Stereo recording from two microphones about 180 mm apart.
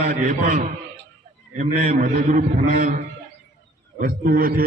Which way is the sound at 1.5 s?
50° right (ahead or behind).